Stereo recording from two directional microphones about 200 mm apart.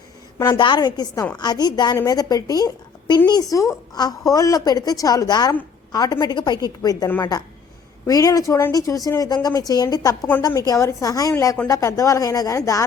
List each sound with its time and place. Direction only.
0.3 s a woman's voice: 20° left (ahead or behind)